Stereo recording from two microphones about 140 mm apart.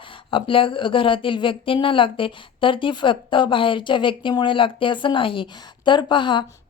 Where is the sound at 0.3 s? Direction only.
40° left (ahead or behind).